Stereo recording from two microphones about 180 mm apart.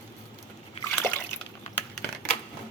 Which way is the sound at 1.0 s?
15° left (ahead or behind).